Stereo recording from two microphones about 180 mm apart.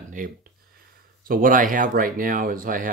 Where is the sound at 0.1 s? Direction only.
50° right (ahead or behind).